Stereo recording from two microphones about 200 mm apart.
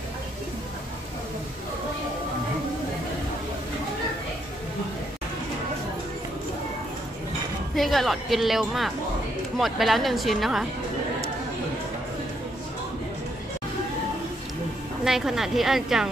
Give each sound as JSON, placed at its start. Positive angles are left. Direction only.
{"t": 7.7, "sound": "a woman's voice", "side_deg": 0}
{"t": 15.0, "sound": "a woman's voice", "side_deg": 0}